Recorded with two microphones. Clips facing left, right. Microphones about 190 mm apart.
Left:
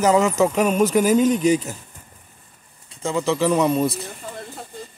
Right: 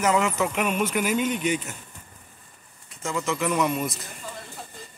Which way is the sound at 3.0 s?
30° left (ahead or behind).